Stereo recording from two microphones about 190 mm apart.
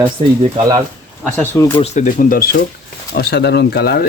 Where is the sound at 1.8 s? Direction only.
35° left (ahead or behind).